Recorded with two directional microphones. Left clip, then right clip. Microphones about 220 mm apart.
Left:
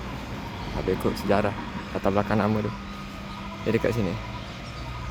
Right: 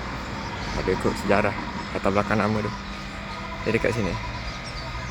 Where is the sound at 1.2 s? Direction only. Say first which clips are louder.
Right 2 dB; 10° left (ahead or behind).